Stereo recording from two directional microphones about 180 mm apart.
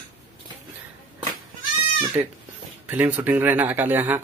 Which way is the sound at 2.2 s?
10° right (ahead or behind).